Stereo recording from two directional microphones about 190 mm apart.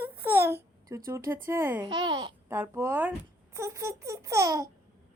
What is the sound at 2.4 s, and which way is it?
A child's voice, 10° right (ahead or behind).